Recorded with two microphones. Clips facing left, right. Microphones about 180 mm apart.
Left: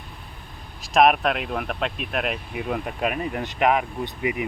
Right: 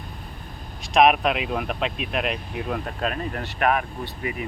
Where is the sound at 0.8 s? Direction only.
Centre (ahead or behind).